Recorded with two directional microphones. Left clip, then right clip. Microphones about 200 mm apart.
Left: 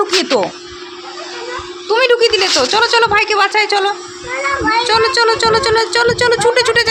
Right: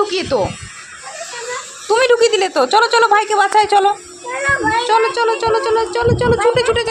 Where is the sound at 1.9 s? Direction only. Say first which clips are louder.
Left 1 dB; 5° right (ahead or behind).